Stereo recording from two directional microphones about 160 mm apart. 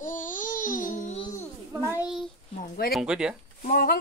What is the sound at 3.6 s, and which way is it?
Speech, 65° left (ahead or behind).